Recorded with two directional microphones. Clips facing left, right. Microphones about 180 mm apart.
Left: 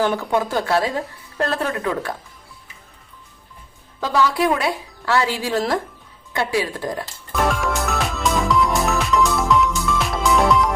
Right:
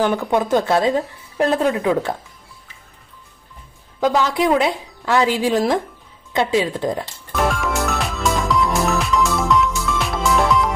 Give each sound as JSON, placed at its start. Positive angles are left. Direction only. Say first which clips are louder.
{"t": 0.0, "sound": "speech", "louder": "right 2 dB", "side_deg": -15}
{"t": 4.0, "sound": "speech", "louder": "right 2 dB", "side_deg": -20}
{"t": 7.4, "sound": "music", "louder": "right 1 dB", "side_deg": 0}